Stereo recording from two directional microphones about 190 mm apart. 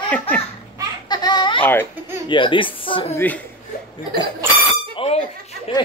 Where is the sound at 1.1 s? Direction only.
20° left (ahead or behind).